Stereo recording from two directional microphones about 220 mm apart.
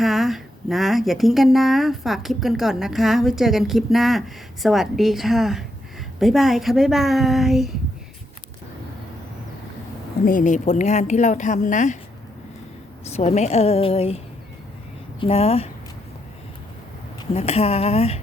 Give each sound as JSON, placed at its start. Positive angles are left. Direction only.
{"t": 0.0, "sound": "speech", "side_deg": 0}
{"t": 10.2, "sound": "speech", "side_deg": 35}
{"t": 13.1, "sound": "a woman's voice", "side_deg": 30}
{"t": 15.2, "sound": "a woman's voice", "side_deg": 25}
{"t": 17.3, "sound": "a woman's voice", "side_deg": 30}